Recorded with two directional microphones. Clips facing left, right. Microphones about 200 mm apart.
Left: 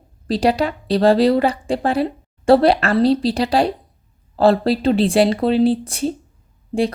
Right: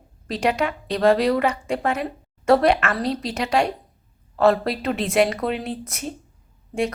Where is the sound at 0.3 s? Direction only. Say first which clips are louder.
Left 5 dB; 35° left (ahead or behind).